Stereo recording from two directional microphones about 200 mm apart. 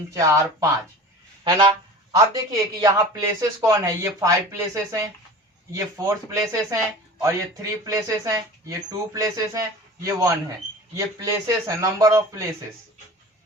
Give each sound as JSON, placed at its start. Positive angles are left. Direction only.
{"t": 0.1, "sound": "speech", "side_deg": -15}
{"t": 1.5, "sound": "a sound", "side_deg": -20}
{"t": 2.1, "sound": "speech", "side_deg": -15}